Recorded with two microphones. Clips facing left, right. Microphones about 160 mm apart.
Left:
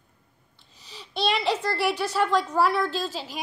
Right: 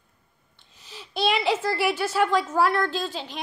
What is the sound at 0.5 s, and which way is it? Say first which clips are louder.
A woman's voice: right 1 dB; centre (ahead or behind).